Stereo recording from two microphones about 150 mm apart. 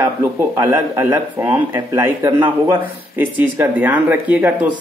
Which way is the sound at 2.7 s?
10° right (ahead or behind).